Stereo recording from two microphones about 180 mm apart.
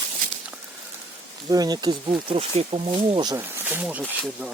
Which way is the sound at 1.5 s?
20° right (ahead or behind).